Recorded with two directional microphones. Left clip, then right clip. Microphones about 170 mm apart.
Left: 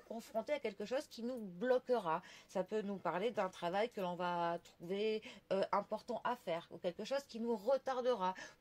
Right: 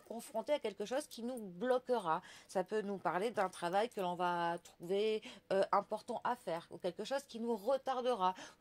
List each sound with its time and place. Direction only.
0.1 s speech: 35° right (ahead or behind)